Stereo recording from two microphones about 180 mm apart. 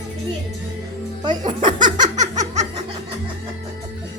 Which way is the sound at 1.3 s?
45° right (ahead or behind).